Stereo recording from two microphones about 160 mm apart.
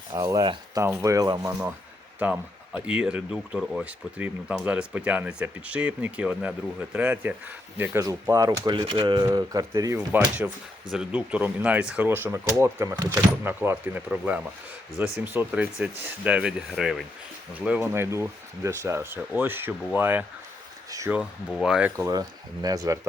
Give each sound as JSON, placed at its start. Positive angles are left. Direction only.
{"t": 0.1, "sound": "speech", "side_deg": -20}
{"t": 1.5, "sound": "speech", "side_deg": -10}
{"t": 10.4, "sound": "speech", "side_deg": -10}
{"t": 21.9, "sound": "speech", "side_deg": -20}